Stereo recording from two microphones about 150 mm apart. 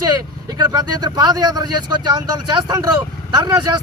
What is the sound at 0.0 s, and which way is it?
A man's voice, 25° right (ahead or behind).